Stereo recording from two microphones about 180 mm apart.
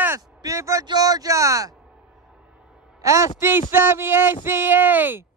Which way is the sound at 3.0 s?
15° right (ahead or behind).